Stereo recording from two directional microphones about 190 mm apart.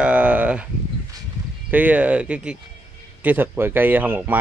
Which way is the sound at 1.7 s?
10° right (ahead or behind).